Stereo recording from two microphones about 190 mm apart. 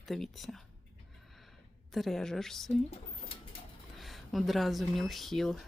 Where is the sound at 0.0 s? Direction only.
Centre (ahead or behind).